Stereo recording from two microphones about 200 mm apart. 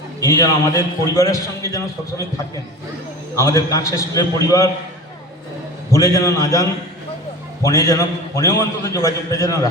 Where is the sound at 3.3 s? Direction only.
15° left (ahead or behind).